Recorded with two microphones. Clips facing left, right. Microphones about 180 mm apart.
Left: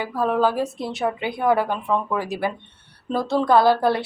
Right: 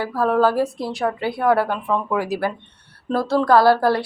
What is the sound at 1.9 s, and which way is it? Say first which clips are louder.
Speech: left 1 dB; 5° left (ahead or behind).